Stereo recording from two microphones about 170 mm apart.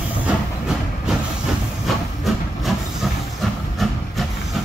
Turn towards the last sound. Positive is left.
turn(degrees=0)  # may be behind; listen again after turning